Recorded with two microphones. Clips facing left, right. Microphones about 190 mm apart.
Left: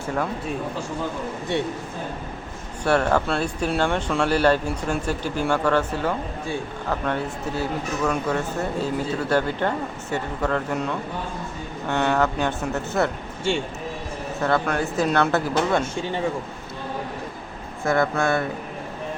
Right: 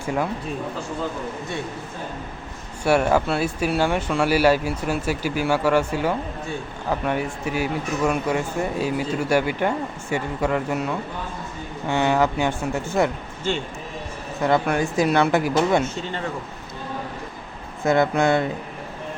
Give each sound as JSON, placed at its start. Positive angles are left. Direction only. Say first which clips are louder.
{"t": 2.8, "sound": "speech", "louder": "right 2 dB", "side_deg": -10}
{"t": 14.4, "sound": "speech", "louder": "right 3 dB", "side_deg": -15}
{"t": 17.8, "sound": "speech", "louder": "right 3 dB", "side_deg": -20}